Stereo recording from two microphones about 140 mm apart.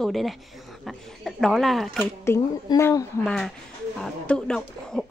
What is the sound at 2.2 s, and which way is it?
Speech, 20° left (ahead or behind).